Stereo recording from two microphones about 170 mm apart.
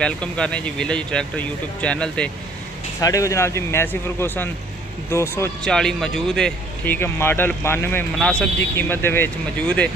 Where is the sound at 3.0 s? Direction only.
20° left (ahead or behind).